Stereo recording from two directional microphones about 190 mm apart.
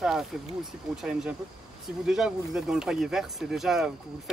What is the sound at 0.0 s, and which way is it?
Speech, centre (ahead or behind).